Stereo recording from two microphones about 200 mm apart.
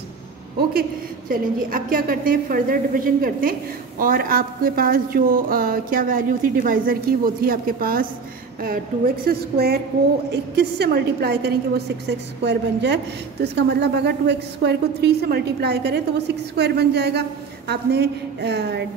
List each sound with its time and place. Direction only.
1.3 s a woman's voice: 45° right (ahead or behind)